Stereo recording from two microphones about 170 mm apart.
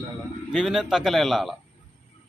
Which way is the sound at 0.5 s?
Centre (ahead or behind).